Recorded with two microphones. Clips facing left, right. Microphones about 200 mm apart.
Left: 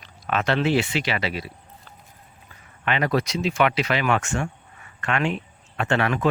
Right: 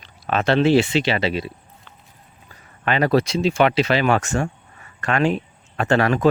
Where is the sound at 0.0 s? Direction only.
30° right (ahead or behind).